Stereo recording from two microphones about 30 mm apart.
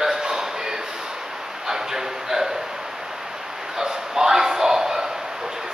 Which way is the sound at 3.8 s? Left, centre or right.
Centre.